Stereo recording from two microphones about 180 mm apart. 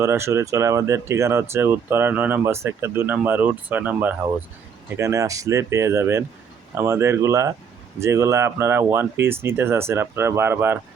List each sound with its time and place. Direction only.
0.0 s speech: 15° right (ahead or behind)